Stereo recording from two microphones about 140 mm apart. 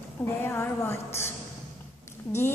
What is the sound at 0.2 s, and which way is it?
A man's voice, 15° left (ahead or behind).